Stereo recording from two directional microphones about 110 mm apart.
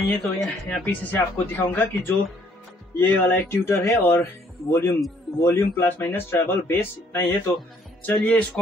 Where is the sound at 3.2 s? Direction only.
20° left (ahead or behind).